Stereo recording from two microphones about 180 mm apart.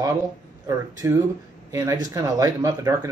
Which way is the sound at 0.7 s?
15° right (ahead or behind).